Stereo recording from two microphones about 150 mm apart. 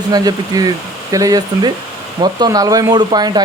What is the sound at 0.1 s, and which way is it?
Speech, 25° right (ahead or behind).